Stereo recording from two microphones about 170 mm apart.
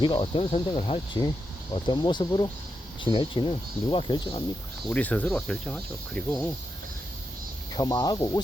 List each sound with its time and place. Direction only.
0.0 s speech: 30° left (ahead or behind)
4.9 s speech: 10° left (ahead or behind)
7.7 s speech: 25° left (ahead or behind)